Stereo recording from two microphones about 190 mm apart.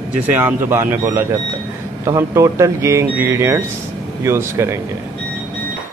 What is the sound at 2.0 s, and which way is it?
Speech, 15° right (ahead or behind).